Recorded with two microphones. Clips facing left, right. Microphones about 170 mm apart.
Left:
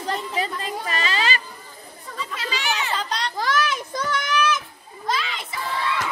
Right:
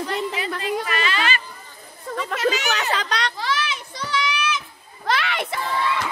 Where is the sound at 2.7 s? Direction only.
70° right (ahead or behind).